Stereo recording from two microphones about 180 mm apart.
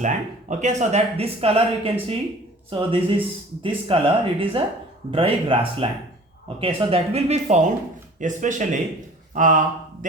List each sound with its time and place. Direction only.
0.0 s speech: 40° right (ahead or behind)